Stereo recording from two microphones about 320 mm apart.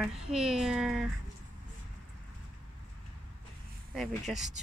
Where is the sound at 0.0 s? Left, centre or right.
Centre.